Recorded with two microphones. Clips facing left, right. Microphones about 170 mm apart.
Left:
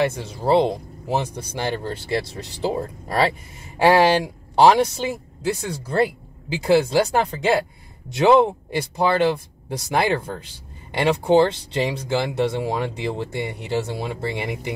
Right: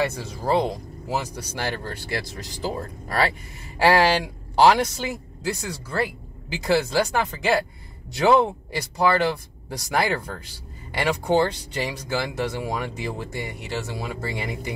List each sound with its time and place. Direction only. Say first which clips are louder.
0.0 s speech: left 3 dB; 25° left (ahead or behind)